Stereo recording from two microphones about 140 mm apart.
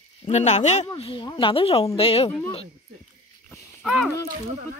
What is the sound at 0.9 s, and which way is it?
Speech, 40° left (ahead or behind).